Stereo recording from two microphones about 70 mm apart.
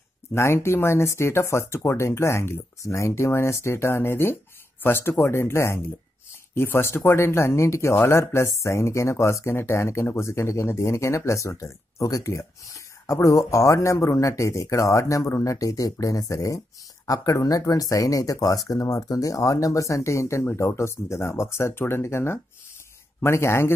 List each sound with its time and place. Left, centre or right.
0.3 s speech: left